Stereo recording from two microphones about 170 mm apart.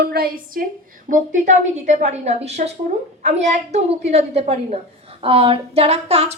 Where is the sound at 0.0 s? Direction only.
65° right (ahead or behind).